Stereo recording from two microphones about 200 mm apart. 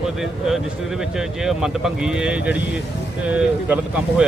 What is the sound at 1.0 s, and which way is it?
Speech, centre (ahead or behind).